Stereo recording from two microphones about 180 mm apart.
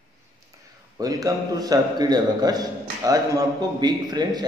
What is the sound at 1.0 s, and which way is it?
A man's voice, 20° right (ahead or behind).